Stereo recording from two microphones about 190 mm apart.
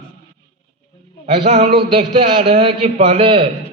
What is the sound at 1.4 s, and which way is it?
A man's voice, 35° right (ahead or behind).